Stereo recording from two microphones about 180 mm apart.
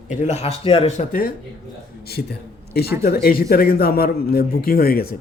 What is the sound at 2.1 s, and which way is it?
A man's voice, 60° left (ahead or behind).